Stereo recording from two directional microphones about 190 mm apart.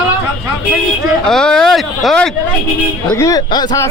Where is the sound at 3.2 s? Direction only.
20° left (ahead or behind).